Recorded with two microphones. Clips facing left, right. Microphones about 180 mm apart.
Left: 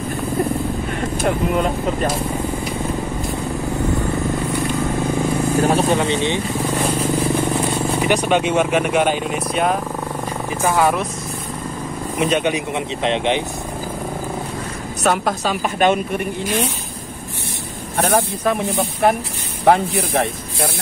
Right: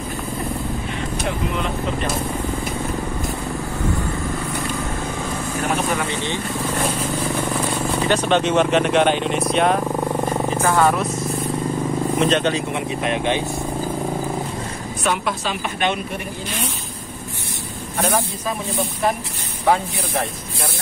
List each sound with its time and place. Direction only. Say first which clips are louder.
1.2 s a woman's voice: left 7 dB; 45° left (ahead or behind)
5.6 s speech: left 5 dB; 35° left (ahead or behind)
8.0 s speech: even; 15° left (ahead or behind)
12.2 s speech: left 2 dB; 10° left (ahead or behind)
15.0 s a woman's voice: left 4 dB; 45° left (ahead or behind)
18.0 s speech: left 4 dB; 60° left (ahead or behind)